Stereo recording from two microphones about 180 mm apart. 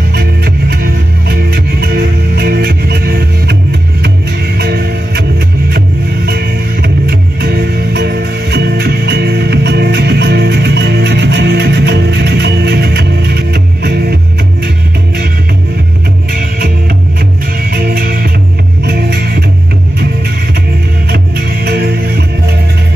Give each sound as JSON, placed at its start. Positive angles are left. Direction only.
{"t": 0.1, "sound": "music", "side_deg": -65}
{"t": 4.6, "sound": "music", "side_deg": -65}
{"t": 6.2, "sound": "music", "side_deg": -60}
{"t": 16.3, "sound": "music", "side_deg": -55}
{"t": 17.7, "sound": "music", "side_deg": -55}
{"t": 21.6, "sound": "music", "side_deg": -65}